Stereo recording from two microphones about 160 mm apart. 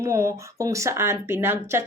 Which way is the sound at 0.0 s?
20° right (ahead or behind).